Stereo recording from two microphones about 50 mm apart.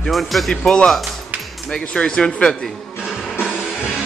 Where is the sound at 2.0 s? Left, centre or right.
Centre.